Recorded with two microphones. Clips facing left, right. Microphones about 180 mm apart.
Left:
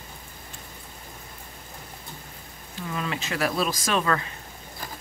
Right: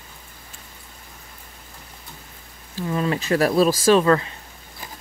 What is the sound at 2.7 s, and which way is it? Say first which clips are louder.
Speech: right 8 dB; 35° right (ahead or behind).